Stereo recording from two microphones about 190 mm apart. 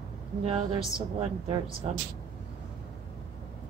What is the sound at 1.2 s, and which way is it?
Speech, 30° right (ahead or behind).